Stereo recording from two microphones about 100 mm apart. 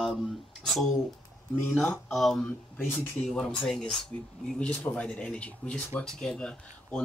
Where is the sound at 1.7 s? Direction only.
15° left (ahead or behind).